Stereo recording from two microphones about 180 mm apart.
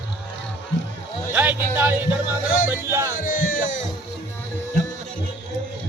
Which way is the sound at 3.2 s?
50° left (ahead or behind).